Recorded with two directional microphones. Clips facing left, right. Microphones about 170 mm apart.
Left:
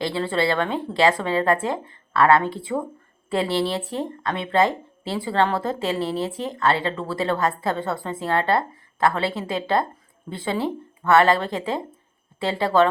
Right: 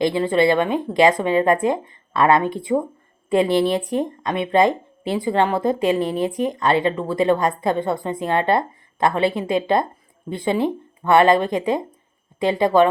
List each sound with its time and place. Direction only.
0.0 s speech: 15° right (ahead or behind)